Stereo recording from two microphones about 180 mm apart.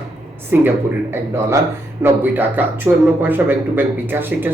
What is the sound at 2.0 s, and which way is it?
Speech, 10° right (ahead or behind).